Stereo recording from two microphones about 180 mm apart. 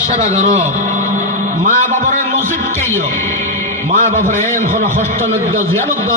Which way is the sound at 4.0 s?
40° right (ahead or behind).